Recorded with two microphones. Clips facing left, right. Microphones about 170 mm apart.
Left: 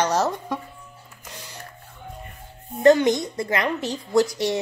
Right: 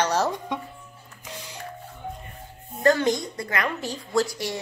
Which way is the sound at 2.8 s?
20° left (ahead or behind).